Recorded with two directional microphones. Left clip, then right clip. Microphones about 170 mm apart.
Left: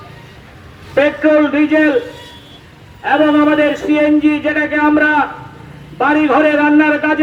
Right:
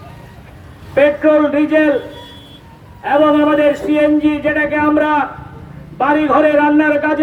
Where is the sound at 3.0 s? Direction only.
25° right (ahead or behind).